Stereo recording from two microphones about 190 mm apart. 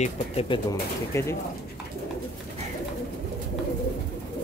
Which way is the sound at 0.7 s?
15° left (ahead or behind).